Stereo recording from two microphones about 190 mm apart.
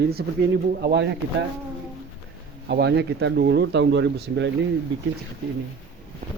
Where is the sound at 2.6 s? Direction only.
60° right (ahead or behind).